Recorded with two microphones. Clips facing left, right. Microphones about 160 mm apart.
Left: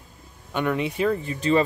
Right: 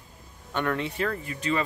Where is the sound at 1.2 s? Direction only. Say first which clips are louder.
Left 6 dB; 30° left (ahead or behind).